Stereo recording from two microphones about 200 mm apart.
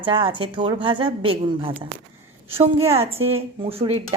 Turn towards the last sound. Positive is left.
turn(degrees=-30)  # may be behind; listen again after turning